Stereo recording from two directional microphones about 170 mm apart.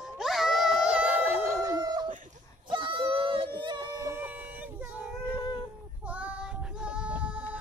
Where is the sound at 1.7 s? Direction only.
25° right (ahead or behind).